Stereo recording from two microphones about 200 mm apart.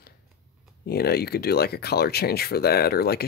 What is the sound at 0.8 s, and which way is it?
Speech, 50° left (ahead or behind).